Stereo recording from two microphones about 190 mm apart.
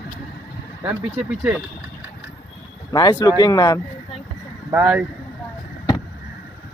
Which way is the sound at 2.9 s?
20° left (ahead or behind).